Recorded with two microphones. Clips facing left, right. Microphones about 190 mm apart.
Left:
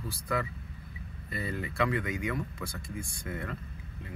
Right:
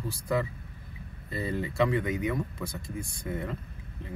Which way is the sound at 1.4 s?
25° right (ahead or behind).